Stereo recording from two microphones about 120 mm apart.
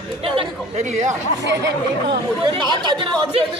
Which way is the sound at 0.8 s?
85° right.